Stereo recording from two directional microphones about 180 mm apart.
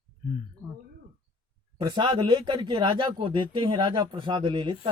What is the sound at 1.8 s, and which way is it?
Speech, 25° right (ahead or behind).